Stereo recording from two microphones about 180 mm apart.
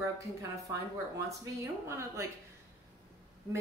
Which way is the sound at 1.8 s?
15° right (ahead or behind).